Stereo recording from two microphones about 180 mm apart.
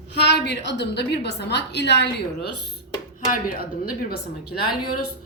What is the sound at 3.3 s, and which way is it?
Speech, 55° left (ahead or behind).